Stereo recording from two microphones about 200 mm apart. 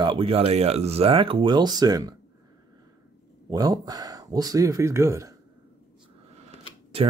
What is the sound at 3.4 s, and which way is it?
Speech, 20° right (ahead or behind).